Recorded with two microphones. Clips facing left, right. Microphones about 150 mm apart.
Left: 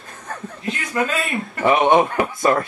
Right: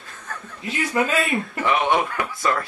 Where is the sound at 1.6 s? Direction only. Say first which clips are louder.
Left 7 dB; 40° left (ahead or behind).